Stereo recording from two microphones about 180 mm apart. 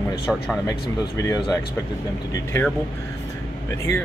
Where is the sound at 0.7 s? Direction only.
20° left (ahead or behind).